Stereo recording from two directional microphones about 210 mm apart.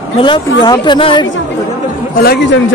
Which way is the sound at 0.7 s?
20° left (ahead or behind).